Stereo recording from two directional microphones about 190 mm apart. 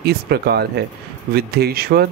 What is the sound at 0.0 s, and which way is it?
Speech, 55° right (ahead or behind).